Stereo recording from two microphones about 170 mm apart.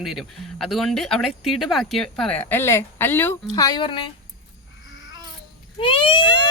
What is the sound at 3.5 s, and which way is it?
Speech, 25° left (ahead or behind).